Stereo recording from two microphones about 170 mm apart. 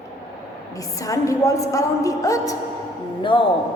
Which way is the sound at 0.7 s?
20° left (ahead or behind).